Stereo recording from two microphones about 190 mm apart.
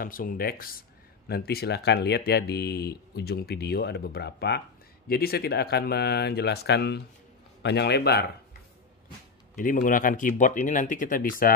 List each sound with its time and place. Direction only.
0.0 s speech: 45° left (ahead or behind)
9.6 s speech: 45° left (ahead or behind)